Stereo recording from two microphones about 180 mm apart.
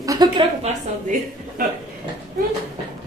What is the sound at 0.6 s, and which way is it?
A woman's voice, 45° right (ahead or behind).